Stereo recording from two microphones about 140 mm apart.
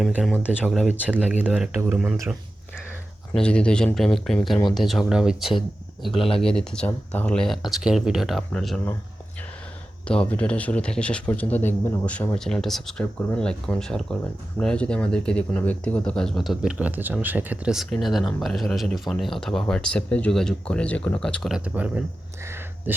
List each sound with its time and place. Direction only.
0.0 s speech: 5° right (ahead or behind)
3.4 s speech: 5° left (ahead or behind)
6.1 s speech: 40° left (ahead or behind)
6.4 s speech: 5° left (ahead or behind)
10.1 s speech: 10° left (ahead or behind)
21.5 s speech: 10° right (ahead or behind)
22.4 s a sound: 15° right (ahead or behind)